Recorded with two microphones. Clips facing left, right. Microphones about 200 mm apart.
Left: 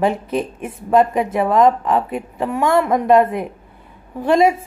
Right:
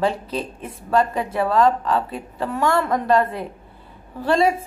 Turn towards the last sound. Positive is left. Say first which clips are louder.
# left 4 dB
turn(degrees=20)  # may be behind; listen again after turning